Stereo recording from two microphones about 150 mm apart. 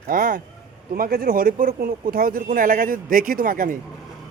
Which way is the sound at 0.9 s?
80° right.